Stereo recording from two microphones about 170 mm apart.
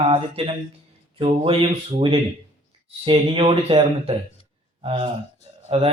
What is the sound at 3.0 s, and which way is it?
A man's voice, 35° right (ahead or behind).